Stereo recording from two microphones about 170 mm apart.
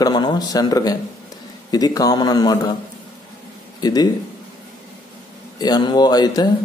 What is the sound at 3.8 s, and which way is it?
Speech, 25° left (ahead or behind).